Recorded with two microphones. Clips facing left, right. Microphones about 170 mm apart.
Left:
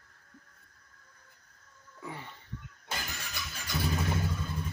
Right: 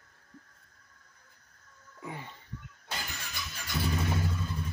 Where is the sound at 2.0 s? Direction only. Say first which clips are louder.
Right 1 dB; 15° right (ahead or behind).